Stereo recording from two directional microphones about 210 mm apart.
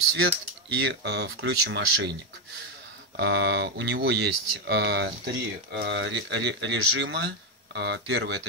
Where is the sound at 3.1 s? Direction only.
55° right (ahead or behind).